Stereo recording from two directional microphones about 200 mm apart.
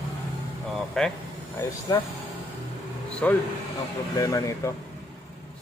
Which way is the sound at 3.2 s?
5° left (ahead or behind).